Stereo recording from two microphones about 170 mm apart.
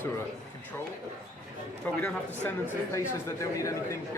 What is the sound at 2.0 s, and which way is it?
Speech, 10° left (ahead or behind).